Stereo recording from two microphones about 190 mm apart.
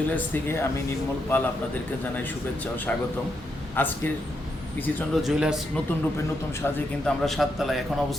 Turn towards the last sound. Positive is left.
turn(degrees=0)  # may be behind; listen again after turning